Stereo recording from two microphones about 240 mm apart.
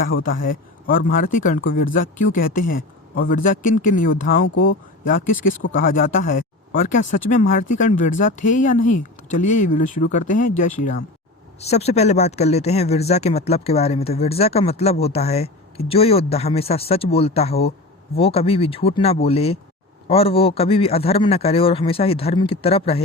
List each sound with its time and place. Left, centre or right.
0.2 s speech: left
5.7 s speech: left